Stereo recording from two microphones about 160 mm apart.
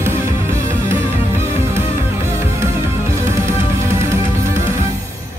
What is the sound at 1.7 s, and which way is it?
Music, 15° right (ahead or behind).